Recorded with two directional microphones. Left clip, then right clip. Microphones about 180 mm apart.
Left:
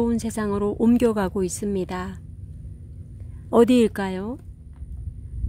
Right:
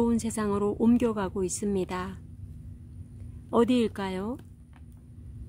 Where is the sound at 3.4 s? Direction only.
25° left (ahead or behind).